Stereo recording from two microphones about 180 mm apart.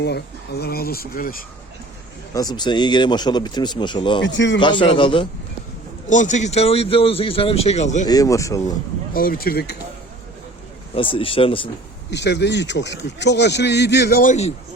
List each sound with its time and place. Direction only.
0.0 s speech: 65° left (ahead or behind)
2.3 s a man's voice: 20° left (ahead or behind)
4.2 s speech: 85° left
4.6 s a man's voice: 25° left (ahead or behind)
6.1 s speech: 45° left (ahead or behind)
8.0 s a man's voice: 20° left (ahead or behind)
9.1 s speech: 55° left (ahead or behind)
10.9 s speech: 30° left (ahead or behind)
12.1 s a man's voice: 75° left (ahead or behind); by 14.5 s 40° left (ahead or behind)